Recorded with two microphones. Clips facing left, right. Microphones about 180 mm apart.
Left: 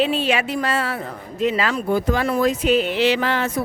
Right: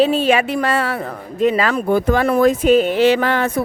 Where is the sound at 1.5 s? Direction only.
50° right (ahead or behind).